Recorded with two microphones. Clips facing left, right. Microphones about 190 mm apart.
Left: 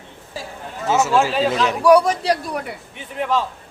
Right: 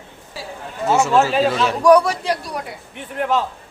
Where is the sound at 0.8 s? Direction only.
5° left (ahead or behind).